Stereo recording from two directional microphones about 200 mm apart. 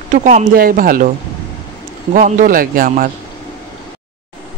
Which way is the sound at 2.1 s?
45° right (ahead or behind).